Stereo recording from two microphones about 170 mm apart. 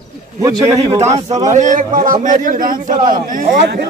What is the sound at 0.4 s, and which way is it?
Speech, 20° right (ahead or behind).